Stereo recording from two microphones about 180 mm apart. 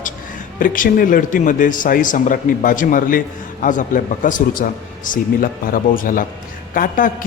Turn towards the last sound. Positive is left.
turn(degrees=50)  # may be behind; listen again after turning